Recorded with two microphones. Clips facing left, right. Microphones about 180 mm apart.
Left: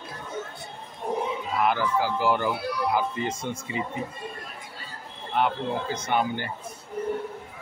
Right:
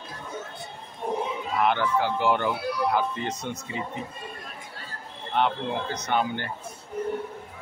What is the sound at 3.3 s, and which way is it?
Speech, 50° left (ahead or behind).